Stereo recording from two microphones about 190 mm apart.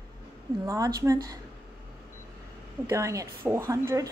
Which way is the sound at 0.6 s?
15° right (ahead or behind).